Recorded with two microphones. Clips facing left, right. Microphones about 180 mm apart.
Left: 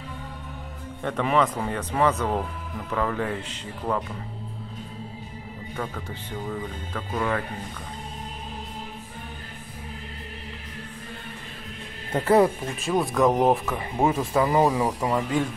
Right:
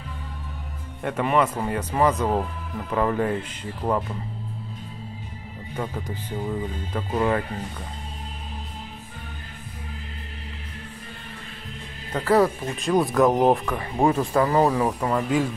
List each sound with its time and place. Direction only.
1.0 s a man's voice: 5° right (ahead or behind)
3.0 s speech: 30° right (ahead or behind)
5.8 s speech: 20° right (ahead or behind)
6.9 s speech: 30° right (ahead or behind)
12.1 s speech: 25° left (ahead or behind)
12.8 s speech: centre (ahead or behind)